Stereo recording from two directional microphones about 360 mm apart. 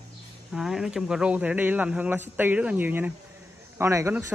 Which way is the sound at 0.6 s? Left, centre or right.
Centre.